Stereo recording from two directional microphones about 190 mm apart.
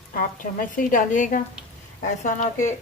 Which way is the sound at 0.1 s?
45° left (ahead or behind).